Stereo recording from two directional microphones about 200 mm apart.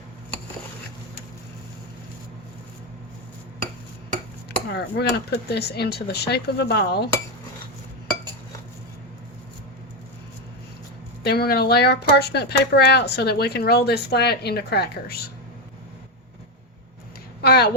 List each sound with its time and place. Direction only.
4.7 s speech: 55° left (ahead or behind)
11.2 s speech: 50° left (ahead or behind)
17.4 s a sound: 50° left (ahead or behind)